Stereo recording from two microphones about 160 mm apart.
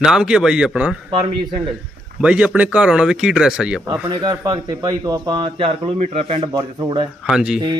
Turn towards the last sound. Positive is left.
turn(degrees=-5)  # may be behind; listen again after turning